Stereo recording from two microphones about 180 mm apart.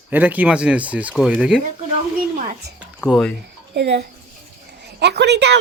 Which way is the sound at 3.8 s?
70° right (ahead or behind).